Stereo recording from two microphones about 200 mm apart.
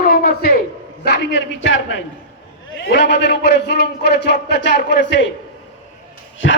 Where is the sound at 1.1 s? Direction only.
60° left (ahead or behind).